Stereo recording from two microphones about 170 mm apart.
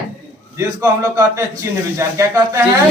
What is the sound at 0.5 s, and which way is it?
A man's voice, 15° right (ahead or behind).